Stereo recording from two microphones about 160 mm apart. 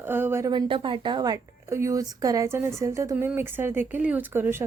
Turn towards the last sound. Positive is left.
turn(degrees=-15)  # may be behind; listen again after turning